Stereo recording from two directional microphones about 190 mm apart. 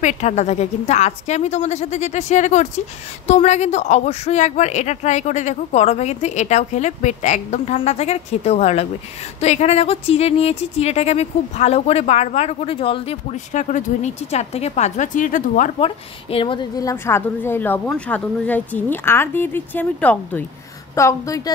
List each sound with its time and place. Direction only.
0.0 s speech: 40° left (ahead or behind)
15.8 s a woman's voice: 30° left (ahead or behind)